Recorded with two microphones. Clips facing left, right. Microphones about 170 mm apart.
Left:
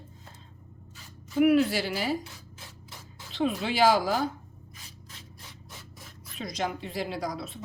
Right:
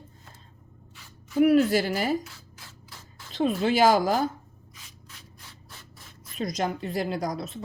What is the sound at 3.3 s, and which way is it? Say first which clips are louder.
Speech: right 4 dB; 40° right (ahead or behind).